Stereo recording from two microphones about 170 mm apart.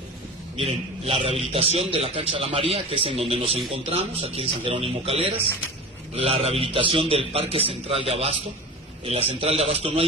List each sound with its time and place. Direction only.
0.6 s a man's voice: 35° right (ahead or behind)